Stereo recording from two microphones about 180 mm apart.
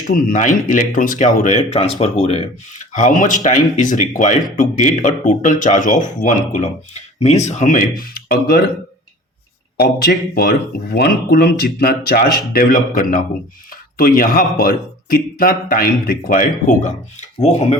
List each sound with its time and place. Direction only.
0.1 s speech: 45° left (ahead or behind)
2.9 s speech: 45° left (ahead or behind)
9.7 s speech: 60° left (ahead or behind); by 17.7 s 40° left (ahead or behind)